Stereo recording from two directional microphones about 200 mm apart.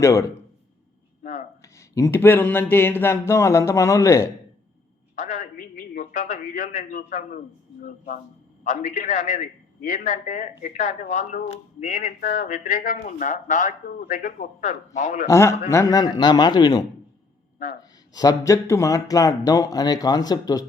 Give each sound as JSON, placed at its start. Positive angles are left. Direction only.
{"t": 0.0, "sound": "speech", "side_deg": 15}
{"t": 1.2, "sound": "a sound", "side_deg": 40}
{"t": 1.6, "sound": "speech", "side_deg": 15}
{"t": 5.1, "sound": "a man's voice", "side_deg": 40}
{"t": 15.3, "sound": "a man's voice", "side_deg": 15}
{"t": 18.1, "sound": "speech", "side_deg": 20}